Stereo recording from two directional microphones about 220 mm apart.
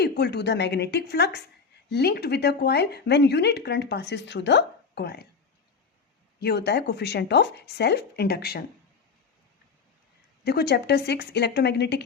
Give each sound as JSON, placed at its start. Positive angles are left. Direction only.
{"t": 0.0, "sound": "speech", "side_deg": 45}
{"t": 6.4, "sound": "speech", "side_deg": 50}
{"t": 10.4, "sound": "speech", "side_deg": 45}